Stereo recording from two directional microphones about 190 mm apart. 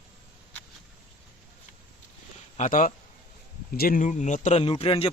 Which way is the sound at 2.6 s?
45° left (ahead or behind).